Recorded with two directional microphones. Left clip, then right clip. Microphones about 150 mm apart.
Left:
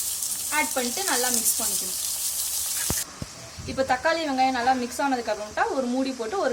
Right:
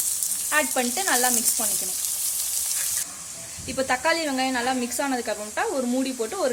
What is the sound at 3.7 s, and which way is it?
Speech, 50° right (ahead or behind).